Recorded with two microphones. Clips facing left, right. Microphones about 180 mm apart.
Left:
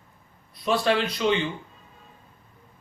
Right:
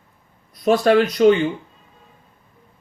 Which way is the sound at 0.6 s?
45° right (ahead or behind).